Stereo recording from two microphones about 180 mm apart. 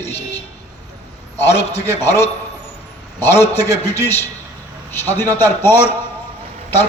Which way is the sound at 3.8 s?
15° left (ahead or behind).